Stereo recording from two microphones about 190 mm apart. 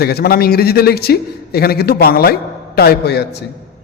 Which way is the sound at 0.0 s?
55° left (ahead or behind).